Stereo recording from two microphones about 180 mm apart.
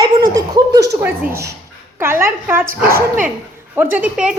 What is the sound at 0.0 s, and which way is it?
Speech, 20° right (ahead or behind).